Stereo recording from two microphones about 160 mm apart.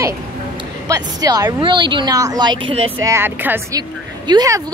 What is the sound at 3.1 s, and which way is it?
A woman's voice, 15° right (ahead or behind).